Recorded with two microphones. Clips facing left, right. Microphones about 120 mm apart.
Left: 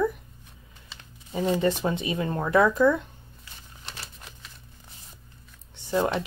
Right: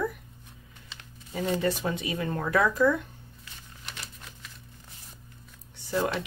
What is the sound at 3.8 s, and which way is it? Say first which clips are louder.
Crumpling: left 1 dB; 35° left (ahead or behind).